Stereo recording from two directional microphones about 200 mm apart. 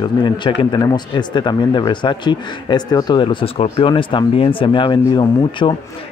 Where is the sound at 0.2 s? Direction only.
25° left (ahead or behind).